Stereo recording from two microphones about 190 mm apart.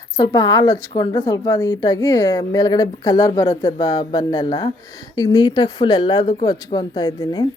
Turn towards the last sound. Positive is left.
turn(degrees=20)  # may be behind; listen again after turning